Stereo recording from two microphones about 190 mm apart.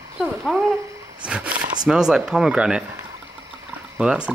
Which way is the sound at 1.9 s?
5° right (ahead or behind).